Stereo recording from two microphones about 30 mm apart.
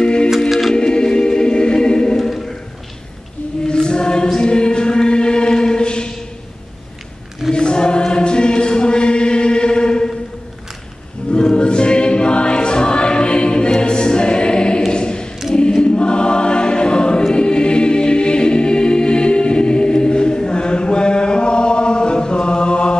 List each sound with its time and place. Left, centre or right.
0.0 s music: left
0.5 s music: centre
0.7 s choir: left
2.1 s a sound: centre
3.6 s choir: left
7.5 s choir: left
11.3 s choir: left
14.9 s a sound: left
15.5 s choir: left